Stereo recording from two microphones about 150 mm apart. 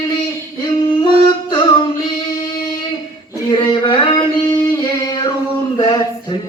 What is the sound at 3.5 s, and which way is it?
Singing, 30° left (ahead or behind).